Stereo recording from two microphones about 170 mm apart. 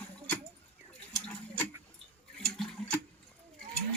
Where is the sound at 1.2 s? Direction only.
10° left (ahead or behind).